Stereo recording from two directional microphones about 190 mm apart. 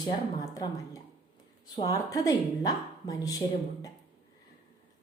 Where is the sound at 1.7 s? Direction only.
20° left (ahead or behind).